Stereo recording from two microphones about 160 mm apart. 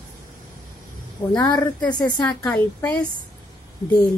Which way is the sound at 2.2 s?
10° left (ahead or behind).